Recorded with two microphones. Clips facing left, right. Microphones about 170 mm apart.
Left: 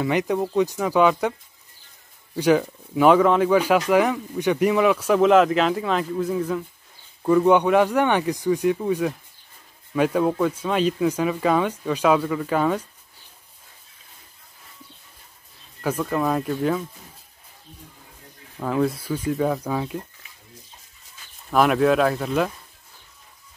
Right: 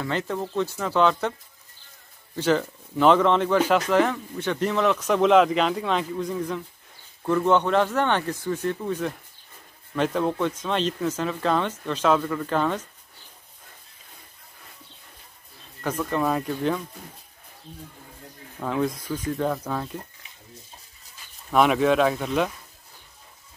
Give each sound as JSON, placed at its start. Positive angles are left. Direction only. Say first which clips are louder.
{"t": 0.0, "sound": "speech", "louder": "left 6 dB", "side_deg": 15}
{"t": 2.3, "sound": "speech", "louder": "left 4 dB", "side_deg": 10}
{"t": 15.8, "sound": "speech", "louder": "left 2 dB", "side_deg": 5}
{"t": 18.6, "sound": "speech", "louder": "left 3 dB", "side_deg": 5}
{"t": 21.5, "sound": "speech", "louder": "left 1 dB", "side_deg": 0}